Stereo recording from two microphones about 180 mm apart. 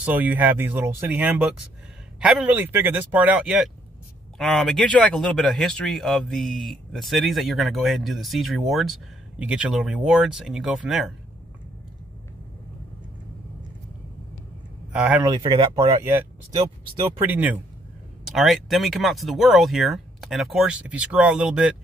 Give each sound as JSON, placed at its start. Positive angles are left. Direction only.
{"t": 0.0, "sound": "speech", "side_deg": -10}
{"t": 14.9, "sound": "speech", "side_deg": -5}
{"t": 15.2, "sound": "speech", "side_deg": -20}
{"t": 16.0, "sound": "speech", "side_deg": -10}